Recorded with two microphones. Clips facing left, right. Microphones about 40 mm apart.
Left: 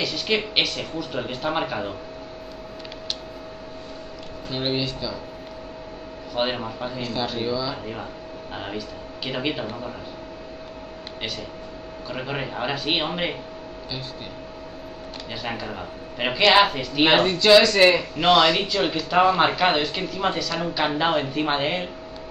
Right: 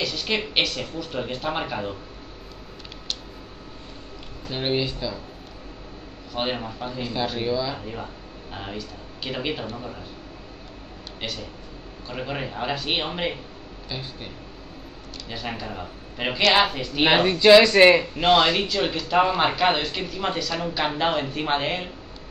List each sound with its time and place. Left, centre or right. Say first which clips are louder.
0.0 s speech: left 2 dB; centre
4.5 s speech: right 1 dB; centre
6.3 s speech: left 2 dB; centre
7.0 s speech: right 1 dB; centre
7.7 s speech: left 2 dB; centre
12.1 s speech: left 1 dB; centre
15.3 s speech: left 1 dB; centre
17.2 s speech: right 4 dB; centre
18.6 s speech: left 1 dB; centre